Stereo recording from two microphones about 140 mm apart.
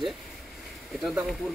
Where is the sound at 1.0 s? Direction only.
5° right (ahead or behind).